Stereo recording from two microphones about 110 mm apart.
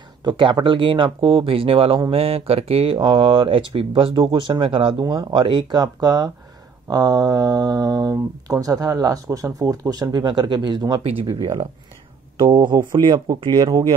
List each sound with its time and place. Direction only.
0.2 s speech: 45° right (ahead or behind)
12.4 s speech: 45° right (ahead or behind)